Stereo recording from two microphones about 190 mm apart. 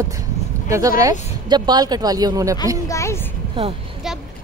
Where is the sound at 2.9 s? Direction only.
15° left (ahead or behind).